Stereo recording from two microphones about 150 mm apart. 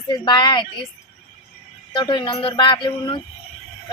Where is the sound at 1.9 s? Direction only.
30° left (ahead or behind).